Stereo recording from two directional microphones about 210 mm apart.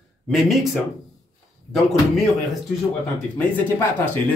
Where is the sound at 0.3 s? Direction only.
Centre (ahead or behind).